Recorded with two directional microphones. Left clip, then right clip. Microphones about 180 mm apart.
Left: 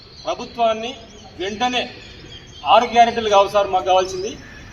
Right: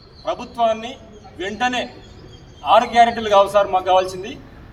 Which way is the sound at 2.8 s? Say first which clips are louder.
Even; 10° right (ahead or behind).